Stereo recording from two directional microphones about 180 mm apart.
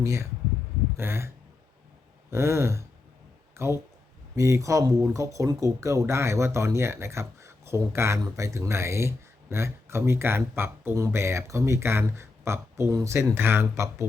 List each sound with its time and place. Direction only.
0.0 s speech: 15° right (ahead or behind)
2.3 s speech: 15° right (ahead or behind)